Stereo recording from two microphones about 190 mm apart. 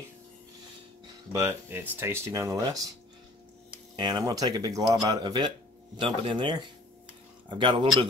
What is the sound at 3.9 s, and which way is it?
Speech, 20° right (ahead or behind).